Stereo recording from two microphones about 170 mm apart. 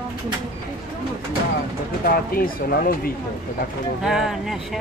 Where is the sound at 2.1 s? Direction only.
60° left (ahead or behind).